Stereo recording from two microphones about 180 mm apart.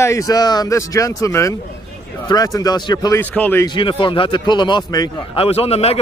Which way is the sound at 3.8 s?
30° left (ahead or behind).